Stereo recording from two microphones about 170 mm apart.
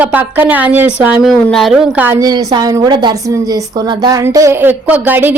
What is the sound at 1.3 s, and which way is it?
Speech, 5° left (ahead or behind).